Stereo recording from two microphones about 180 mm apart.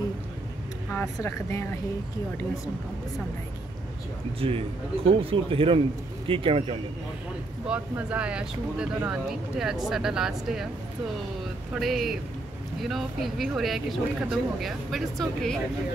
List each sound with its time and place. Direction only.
0.9 s speech: 15° left (ahead or behind)
4.4 s a man's voice: 30° right (ahead or behind)
7.6 s speech: 5° right (ahead or behind)
11.7 s speech: centre (ahead or behind)